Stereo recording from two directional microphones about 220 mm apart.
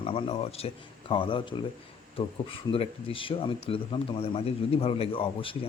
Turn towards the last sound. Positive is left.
turn(degrees=25)  # may be behind; listen again after turning